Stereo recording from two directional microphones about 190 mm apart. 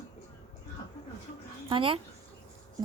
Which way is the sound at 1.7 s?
30° right (ahead or behind).